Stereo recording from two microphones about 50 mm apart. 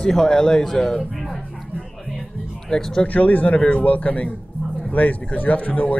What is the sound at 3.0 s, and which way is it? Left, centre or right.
A man's voice, left.